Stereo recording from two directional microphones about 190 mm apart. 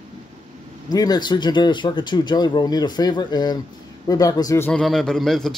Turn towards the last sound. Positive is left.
turn(degrees=0)  # may be behind; listen again after turning